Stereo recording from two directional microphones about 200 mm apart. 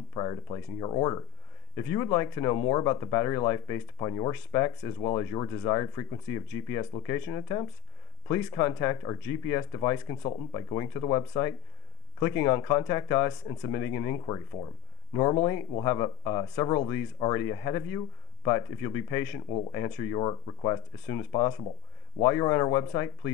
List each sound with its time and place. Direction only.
0.1 s speech: 20° left (ahead or behind)
15.8 s speech: 15° left (ahead or behind)